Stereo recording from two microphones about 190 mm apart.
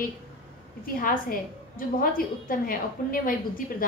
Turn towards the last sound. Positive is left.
turn(degrees=45)  # may be behind; listen again after turning